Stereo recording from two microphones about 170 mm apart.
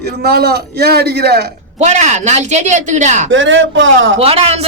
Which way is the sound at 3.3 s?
90° right.